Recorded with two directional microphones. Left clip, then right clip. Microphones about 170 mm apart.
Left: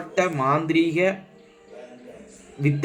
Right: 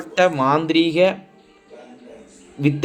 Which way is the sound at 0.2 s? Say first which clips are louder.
Right 5 dB; 30° right (ahead or behind).